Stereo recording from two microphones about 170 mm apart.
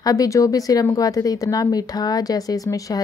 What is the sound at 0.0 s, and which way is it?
Speech, 20° left (ahead or behind).